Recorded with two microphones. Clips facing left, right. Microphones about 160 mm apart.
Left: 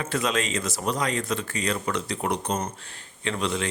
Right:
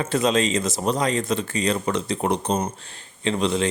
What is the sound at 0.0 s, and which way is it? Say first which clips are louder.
A man's voice: right 6 dB; 25° right (ahead or behind).